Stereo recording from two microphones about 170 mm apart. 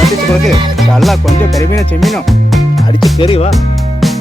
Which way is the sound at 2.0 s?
Centre (ahead or behind).